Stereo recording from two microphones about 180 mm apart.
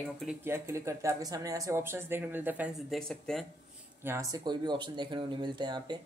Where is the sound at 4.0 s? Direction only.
15° right (ahead or behind).